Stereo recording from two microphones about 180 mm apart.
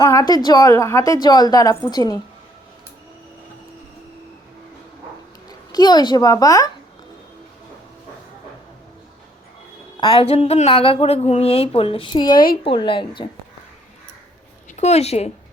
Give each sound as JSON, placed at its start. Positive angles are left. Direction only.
{"t": 0.0, "sound": "a woman's voice", "side_deg": 20}
{"t": 5.5, "sound": "a child's voice", "side_deg": 20}
{"t": 10.0, "sound": "a woman's voice", "side_deg": 30}
{"t": 14.8, "sound": "a woman's voice", "side_deg": 35}